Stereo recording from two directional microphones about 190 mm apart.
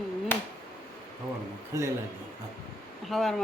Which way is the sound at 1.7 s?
15° right (ahead or behind).